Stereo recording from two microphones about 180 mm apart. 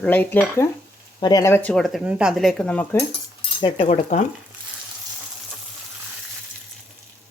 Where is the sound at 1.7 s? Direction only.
Centre (ahead or behind).